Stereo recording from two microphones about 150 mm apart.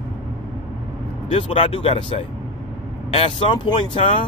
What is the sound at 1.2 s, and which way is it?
Speech, 40° left (ahead or behind).